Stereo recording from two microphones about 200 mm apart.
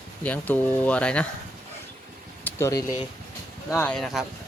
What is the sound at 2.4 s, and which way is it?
Speech, 15° left (ahead or behind).